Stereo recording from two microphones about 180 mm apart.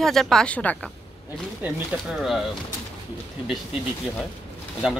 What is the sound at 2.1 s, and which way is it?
Speech, centre (ahead or behind).